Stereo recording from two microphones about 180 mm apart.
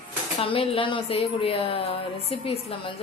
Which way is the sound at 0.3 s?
30° left (ahead or behind).